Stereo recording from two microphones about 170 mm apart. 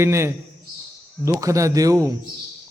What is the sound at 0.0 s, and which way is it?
A man's voice, 15° right (ahead or behind).